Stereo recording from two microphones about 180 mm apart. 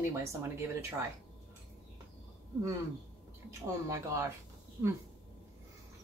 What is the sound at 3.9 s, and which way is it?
Speech, 15° right (ahead or behind).